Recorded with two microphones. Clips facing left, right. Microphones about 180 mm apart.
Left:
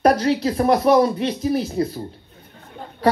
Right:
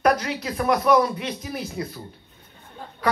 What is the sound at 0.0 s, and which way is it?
Speech, 30° left (ahead or behind).